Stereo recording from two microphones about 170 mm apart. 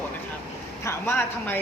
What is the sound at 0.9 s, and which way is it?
Speech, 15° left (ahead or behind).